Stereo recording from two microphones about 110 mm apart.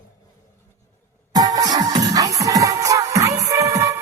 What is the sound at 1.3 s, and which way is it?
Music, 35° right (ahead or behind).